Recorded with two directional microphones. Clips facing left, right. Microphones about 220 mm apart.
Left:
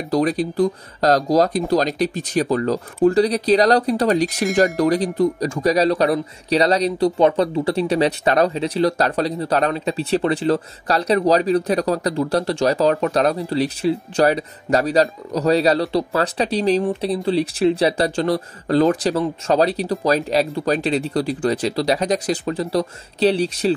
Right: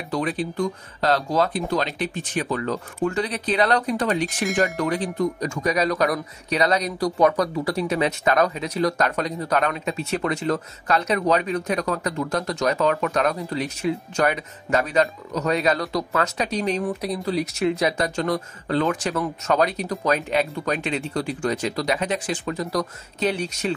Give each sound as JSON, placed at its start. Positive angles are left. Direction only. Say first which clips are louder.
{"t": 0.1, "sound": "speech", "louder": "left 6 dB", "side_deg": 40}